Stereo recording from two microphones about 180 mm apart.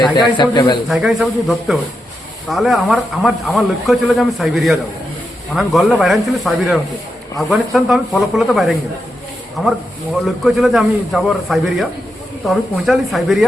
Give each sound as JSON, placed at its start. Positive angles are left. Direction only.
{"t": 0.2, "sound": "a man's voice", "side_deg": 25}
{"t": 0.9, "sound": "a man's voice", "side_deg": 0}